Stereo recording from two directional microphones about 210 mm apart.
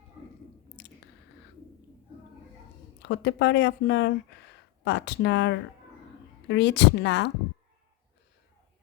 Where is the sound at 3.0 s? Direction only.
55° left (ahead or behind).